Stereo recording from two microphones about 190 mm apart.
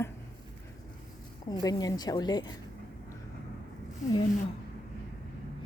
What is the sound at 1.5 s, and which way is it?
A woman's voice, 20° left (ahead or behind).